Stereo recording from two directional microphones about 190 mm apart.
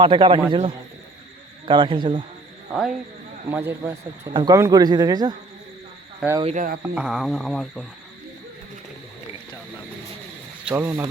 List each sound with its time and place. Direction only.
0.0 s speech: 25° right (ahead or behind)
3.5 s speech: 15° right (ahead or behind)
6.4 s speech: 40° right (ahead or behind)
6.8 s speech: 5° right (ahead or behind)
10.7 s speech: 10° right (ahead or behind)